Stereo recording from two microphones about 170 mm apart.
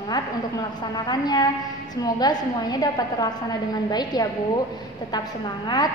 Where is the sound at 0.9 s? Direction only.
25° left (ahead or behind).